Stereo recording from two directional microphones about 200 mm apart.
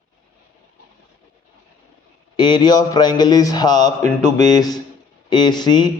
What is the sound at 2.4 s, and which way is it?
Speech, 25° left (ahead or behind).